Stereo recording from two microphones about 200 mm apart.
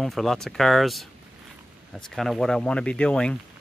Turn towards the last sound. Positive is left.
turn(degrees=5)  # may be behind; listen again after turning